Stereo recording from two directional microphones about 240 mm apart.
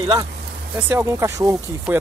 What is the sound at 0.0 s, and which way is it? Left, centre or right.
Speech, centre.